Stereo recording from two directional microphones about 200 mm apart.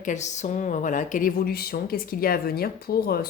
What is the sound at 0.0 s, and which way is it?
A woman's voice, 35° left (ahead or behind).